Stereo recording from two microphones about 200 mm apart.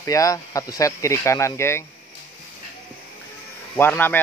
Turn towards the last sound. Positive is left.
turn(degrees=10)  # may be behind; listen again after turning